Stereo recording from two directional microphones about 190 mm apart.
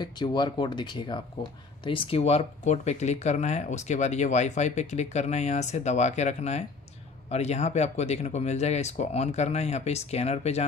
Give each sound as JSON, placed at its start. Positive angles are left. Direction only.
{"t": 0.0, "sound": "speech", "side_deg": 25}